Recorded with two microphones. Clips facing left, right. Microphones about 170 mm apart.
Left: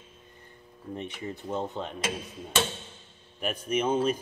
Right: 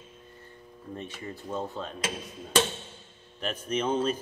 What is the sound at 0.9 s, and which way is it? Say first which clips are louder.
Speech: left 3 dB; 20° left (ahead or behind).